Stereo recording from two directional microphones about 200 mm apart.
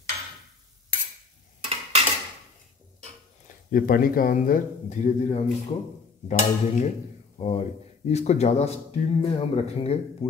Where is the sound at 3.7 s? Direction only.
45° left (ahead or behind).